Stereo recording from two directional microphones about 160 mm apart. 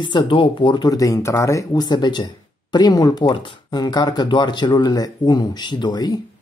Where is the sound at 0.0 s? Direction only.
30° left (ahead or behind).